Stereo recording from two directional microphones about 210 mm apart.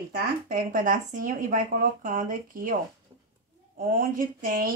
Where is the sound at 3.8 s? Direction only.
40° right (ahead or behind).